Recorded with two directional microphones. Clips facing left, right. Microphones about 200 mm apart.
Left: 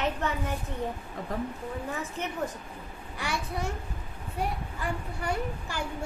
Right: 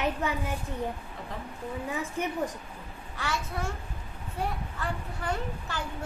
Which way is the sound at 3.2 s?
15° left (ahead or behind).